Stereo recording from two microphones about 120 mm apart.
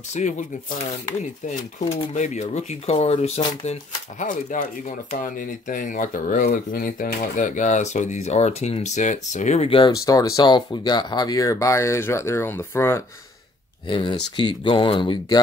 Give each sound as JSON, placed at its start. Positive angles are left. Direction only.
{"t": 0.1, "sound": "speech", "side_deg": 90}
{"t": 3.6, "sound": "speech", "side_deg": 80}
{"t": 9.7, "sound": "speech", "side_deg": 45}
{"t": 9.9, "sound": "speech", "side_deg": 30}
{"t": 13.8, "sound": "speech", "side_deg": 45}